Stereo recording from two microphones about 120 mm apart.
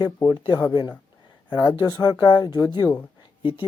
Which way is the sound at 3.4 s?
45° left (ahead or behind).